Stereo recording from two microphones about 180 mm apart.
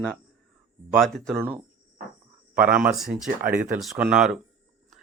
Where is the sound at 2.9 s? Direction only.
5° right (ahead or behind).